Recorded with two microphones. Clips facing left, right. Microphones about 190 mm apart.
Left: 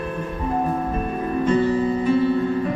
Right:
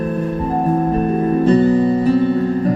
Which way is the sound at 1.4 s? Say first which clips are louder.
Right 5 dB; 35° right (ahead or behind).